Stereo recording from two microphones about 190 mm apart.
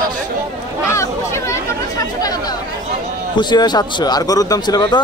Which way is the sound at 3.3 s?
25° left (ahead or behind).